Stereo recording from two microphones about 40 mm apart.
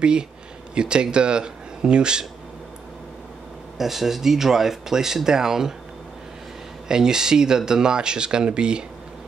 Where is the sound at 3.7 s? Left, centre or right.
Centre.